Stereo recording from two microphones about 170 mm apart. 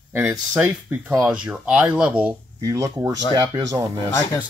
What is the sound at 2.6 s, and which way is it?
Speech, 20° right (ahead or behind).